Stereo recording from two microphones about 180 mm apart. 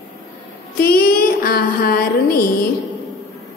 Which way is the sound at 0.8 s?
55° left (ahead or behind).